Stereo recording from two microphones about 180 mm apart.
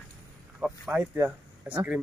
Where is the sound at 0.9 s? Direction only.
10° right (ahead or behind).